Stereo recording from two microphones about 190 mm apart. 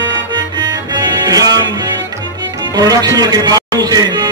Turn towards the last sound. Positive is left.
turn(degrees=-20)  # may be behind; listen again after turning